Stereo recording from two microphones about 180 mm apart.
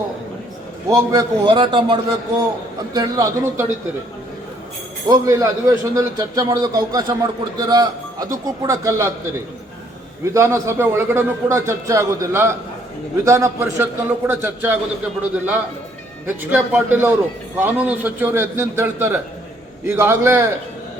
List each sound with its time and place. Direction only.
0.9 s a man's voice: 20° right (ahead or behind)
5.0 s a man's voice: 20° right (ahead or behind)
10.2 s a man's voice: 15° right (ahead or behind)